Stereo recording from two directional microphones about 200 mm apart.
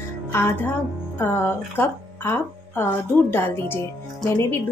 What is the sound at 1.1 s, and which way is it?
Speech, 10° left (ahead or behind).